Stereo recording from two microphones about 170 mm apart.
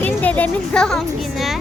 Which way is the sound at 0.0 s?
10° left (ahead or behind).